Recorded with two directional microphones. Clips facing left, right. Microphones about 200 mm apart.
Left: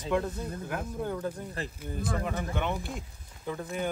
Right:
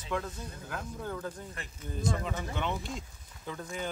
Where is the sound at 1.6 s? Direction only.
35° left (ahead or behind).